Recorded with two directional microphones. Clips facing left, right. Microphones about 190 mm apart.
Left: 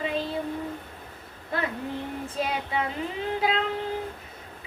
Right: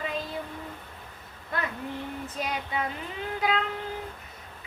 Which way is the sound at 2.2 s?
30° left (ahead or behind).